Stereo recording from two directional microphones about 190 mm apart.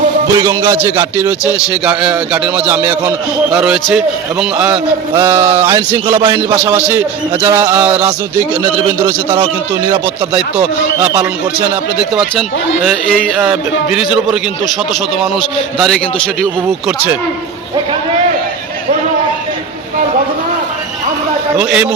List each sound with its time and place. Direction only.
0.3 s a man's voice: 20° right (ahead or behind)
0.8 s a man's voice: 10° right (ahead or behind)
10.3 s a man's voice: 10° right (ahead or behind)
13.4 s speech: 5° right (ahead or behind)
15.8 s speech: 5° left (ahead or behind)
21.6 s a man's voice: 5° right (ahead or behind)